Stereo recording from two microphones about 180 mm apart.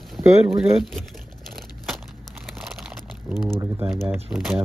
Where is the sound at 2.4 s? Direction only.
Centre (ahead or behind).